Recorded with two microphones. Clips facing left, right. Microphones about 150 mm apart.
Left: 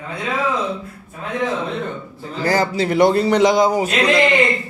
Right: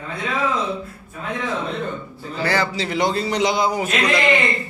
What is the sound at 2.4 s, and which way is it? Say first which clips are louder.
A man's voice: left 4 dB; 40° left (ahead or behind).